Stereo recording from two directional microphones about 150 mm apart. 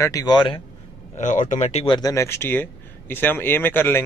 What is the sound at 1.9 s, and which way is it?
Speech, 25° left (ahead or behind).